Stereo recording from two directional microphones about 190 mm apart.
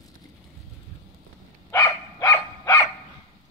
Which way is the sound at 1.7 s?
15° left (ahead or behind).